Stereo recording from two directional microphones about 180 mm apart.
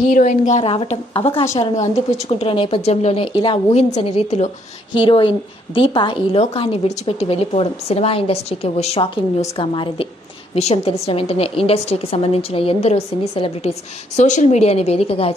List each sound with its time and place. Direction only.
0.1 s a woman's voice: 45° left (ahead or behind)